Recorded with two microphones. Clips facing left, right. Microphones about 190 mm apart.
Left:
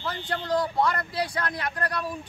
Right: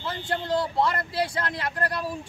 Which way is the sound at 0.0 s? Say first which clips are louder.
Right 1 dB; 25° right (ahead or behind).